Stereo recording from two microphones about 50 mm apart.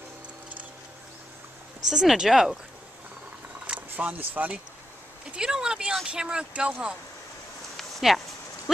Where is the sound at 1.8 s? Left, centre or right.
Centre.